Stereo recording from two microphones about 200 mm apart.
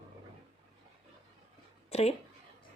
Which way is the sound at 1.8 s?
30° left (ahead or behind).